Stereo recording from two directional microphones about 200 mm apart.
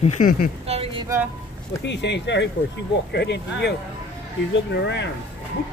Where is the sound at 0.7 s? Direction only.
30° right (ahead or behind).